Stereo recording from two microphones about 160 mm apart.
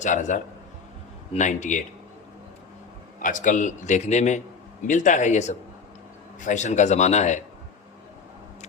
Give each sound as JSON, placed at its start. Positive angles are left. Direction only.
{"t": 0.0, "sound": "a man's voice", "side_deg": 50}
{"t": 3.2, "sound": "a man's voice", "side_deg": 55}